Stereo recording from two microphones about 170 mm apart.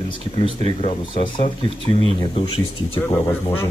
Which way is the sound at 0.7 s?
30° left (ahead or behind).